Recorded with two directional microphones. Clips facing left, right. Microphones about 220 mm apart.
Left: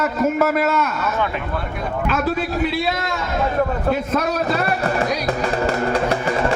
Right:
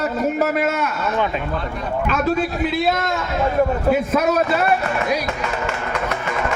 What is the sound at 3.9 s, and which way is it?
Speech, 5° right (ahead or behind).